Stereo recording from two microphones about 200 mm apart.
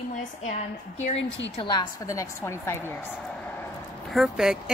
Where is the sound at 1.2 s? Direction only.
65° left (ahead or behind).